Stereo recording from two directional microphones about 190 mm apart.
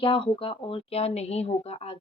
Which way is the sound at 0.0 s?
30° left (ahead or behind).